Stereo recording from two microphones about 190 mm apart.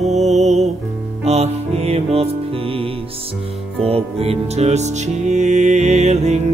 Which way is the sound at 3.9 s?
30° right (ahead or behind).